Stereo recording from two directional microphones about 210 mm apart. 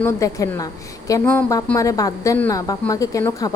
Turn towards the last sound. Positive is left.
turn(degrees=15)  # may be behind; listen again after turning